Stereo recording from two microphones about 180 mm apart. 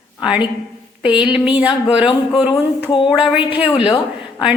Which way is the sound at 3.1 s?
5° right (ahead or behind).